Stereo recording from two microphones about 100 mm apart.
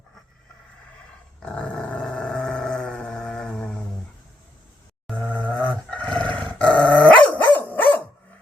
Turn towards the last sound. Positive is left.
turn(degrees=15)  # may be behind; listen again after turning